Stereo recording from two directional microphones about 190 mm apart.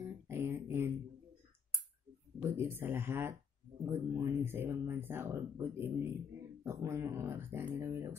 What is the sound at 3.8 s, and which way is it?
Speech, 15° right (ahead or behind).